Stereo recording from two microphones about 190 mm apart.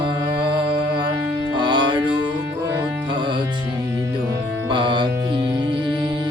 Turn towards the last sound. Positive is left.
turn(degrees=-25)  # may be behind; listen again after turning